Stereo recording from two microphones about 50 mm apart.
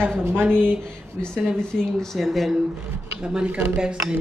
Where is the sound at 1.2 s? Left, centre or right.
Centre.